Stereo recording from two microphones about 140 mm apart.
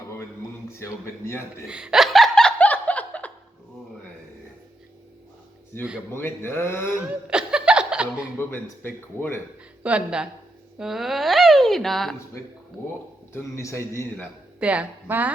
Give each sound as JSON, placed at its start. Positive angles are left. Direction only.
{"t": 0.7, "sound": "a man's voice", "side_deg": 20}
{"t": 1.6, "sound": "snicker", "side_deg": -5}
{"t": 6.1, "sound": "speech", "side_deg": 15}
{"t": 7.0, "sound": "laughter", "side_deg": -5}
{"t": 8.4, "sound": "speech", "side_deg": 15}
{"t": 9.8, "sound": "a woman's voice", "side_deg": -5}
{"t": 13.3, "sound": "a man's voice", "side_deg": 20}
{"t": 14.6, "sound": "a woman's voice", "side_deg": -10}